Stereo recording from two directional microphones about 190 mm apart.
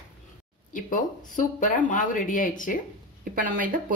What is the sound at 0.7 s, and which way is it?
Speech, 45° left (ahead or behind).